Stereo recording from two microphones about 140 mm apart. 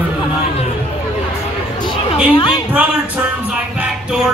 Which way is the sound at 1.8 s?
35° left (ahead or behind).